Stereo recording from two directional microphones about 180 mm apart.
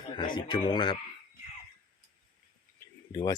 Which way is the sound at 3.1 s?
20° left (ahead or behind).